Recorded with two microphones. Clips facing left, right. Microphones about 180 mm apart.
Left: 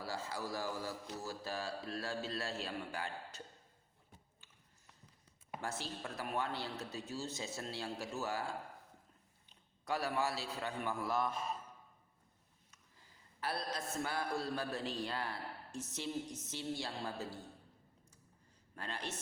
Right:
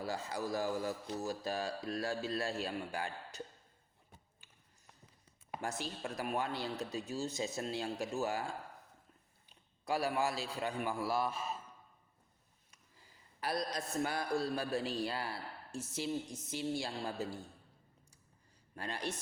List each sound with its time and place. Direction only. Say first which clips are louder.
0.0 s a man's voice: right 3 dB; 20° right (ahead or behind)
5.6 s a man's voice: right 3 dB; 15° right (ahead or behind)
9.5 s a man's voice: right 3 dB; 10° right (ahead or behind)
12.7 s a woman's voice: right 2 dB; 10° right (ahead or behind)
18.8 s a man's voice: right 4 dB; 15° right (ahead or behind)